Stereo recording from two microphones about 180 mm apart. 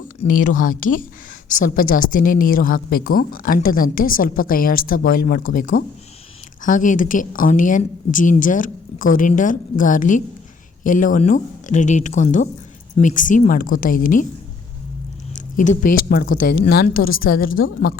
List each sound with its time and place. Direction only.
0.3 s a woman's voice: 50° left (ahead or behind)
15.4 s a woman's voice: 45° left (ahead or behind)